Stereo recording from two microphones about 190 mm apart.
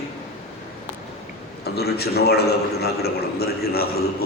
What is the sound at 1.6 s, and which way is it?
A man's voice, 55° left (ahead or behind).